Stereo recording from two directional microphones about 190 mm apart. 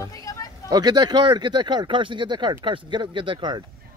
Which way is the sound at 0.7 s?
20° right (ahead or behind).